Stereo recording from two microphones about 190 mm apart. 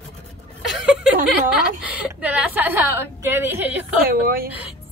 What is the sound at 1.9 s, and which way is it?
A woman's voice, 10° right (ahead or behind).